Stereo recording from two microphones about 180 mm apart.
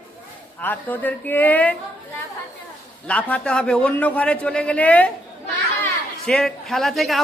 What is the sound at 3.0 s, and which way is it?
A man's voice, 5° left (ahead or behind).